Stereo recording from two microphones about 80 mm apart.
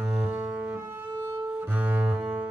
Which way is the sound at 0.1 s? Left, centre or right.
Centre.